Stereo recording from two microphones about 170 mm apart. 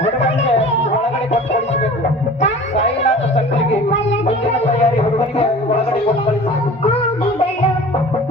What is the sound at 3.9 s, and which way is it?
Music, 90° left.